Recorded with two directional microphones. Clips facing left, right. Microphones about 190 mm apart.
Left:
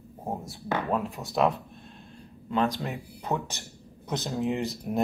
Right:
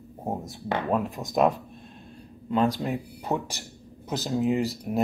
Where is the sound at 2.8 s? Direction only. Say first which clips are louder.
Right 5 dB; centre (ahead or behind).